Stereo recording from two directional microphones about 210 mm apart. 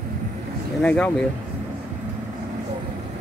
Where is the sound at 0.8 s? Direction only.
5° left (ahead or behind).